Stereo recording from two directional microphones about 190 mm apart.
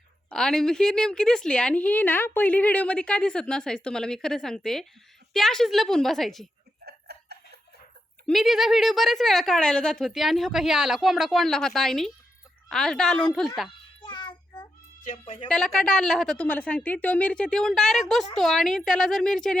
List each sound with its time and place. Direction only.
0.3 s a woman's voice: 5° left (ahead or behind)
6.8 s clock: 55° right (ahead or behind)
8.3 s a woman's voice: centre (ahead or behind)
14.0 s child singing: 25° left (ahead or behind)
15.0 s speech: 30° left (ahead or behind)
15.4 s a woman's voice: 5° left (ahead or behind)